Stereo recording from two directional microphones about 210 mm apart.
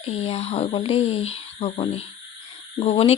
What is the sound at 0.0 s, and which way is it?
Speech, 30° left (ahead or behind).